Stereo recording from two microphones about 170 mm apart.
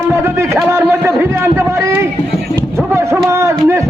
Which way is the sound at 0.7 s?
15° right (ahead or behind).